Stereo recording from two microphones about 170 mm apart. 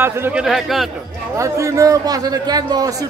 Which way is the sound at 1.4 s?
20° right (ahead or behind).